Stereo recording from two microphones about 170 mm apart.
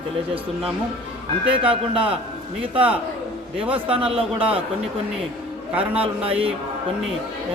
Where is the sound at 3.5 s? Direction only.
10° right (ahead or behind).